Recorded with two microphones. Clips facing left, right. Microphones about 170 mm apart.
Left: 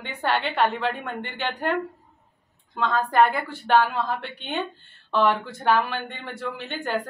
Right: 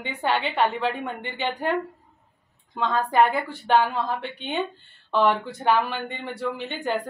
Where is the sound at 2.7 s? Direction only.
10° right (ahead or behind).